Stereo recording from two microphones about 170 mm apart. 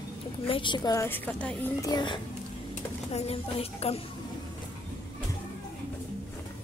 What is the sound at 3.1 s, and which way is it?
Speech, 35° left (ahead or behind).